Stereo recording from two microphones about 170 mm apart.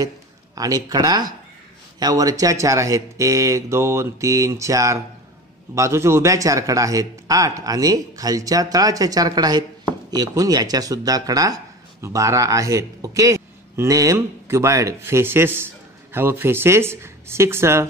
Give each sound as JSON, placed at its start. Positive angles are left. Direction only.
{"t": 0.6, "sound": "a man's voice", "side_deg": -20}